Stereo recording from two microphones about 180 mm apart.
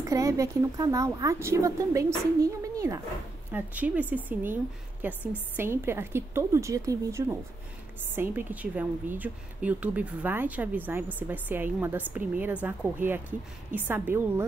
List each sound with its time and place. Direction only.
0.0 s a woman's voice: 15° right (ahead or behind)